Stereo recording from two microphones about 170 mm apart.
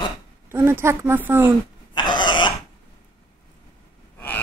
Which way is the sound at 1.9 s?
25° left (ahead or behind).